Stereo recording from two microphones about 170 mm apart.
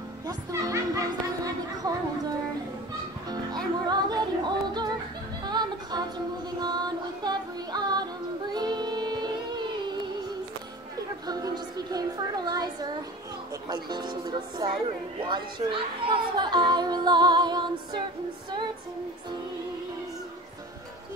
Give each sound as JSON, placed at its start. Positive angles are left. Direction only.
{"t": 0.3, "sound": "speech", "side_deg": -20}
{"t": 3.8, "sound": "speech", "side_deg": -25}
{"t": 5.4, "sound": "music", "side_deg": -25}
{"t": 6.6, "sound": "speech", "side_deg": -25}
{"t": 8.5, "sound": "music", "side_deg": -25}
{"t": 11.2, "sound": "speech", "side_deg": -20}